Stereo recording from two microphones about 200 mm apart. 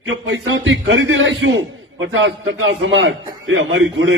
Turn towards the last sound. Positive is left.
turn(degrees=-70)  # may be behind; listen again after turning